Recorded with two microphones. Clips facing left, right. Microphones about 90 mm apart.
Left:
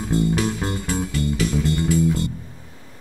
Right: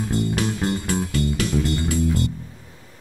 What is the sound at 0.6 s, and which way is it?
Music, 10° left (ahead or behind).